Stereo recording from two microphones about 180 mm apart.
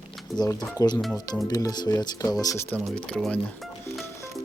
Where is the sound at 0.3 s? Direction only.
20° left (ahead or behind).